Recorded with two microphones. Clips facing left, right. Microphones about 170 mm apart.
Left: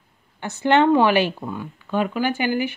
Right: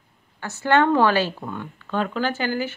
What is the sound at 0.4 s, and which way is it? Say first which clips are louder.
A woman's voice: left 2 dB; 20° left (ahead or behind).